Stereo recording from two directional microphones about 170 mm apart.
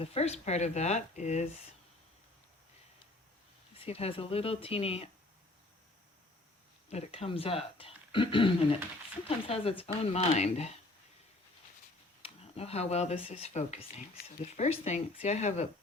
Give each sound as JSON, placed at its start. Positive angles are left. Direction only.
{"t": 0.0, "sound": "speech", "side_deg": 35}
{"t": 3.8, "sound": "speech", "side_deg": 35}
{"t": 6.9, "sound": "speech", "side_deg": 40}
{"t": 12.2, "sound": "speech", "side_deg": 35}